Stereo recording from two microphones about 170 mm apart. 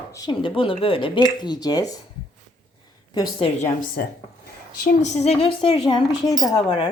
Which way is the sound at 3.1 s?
25° left (ahead or behind).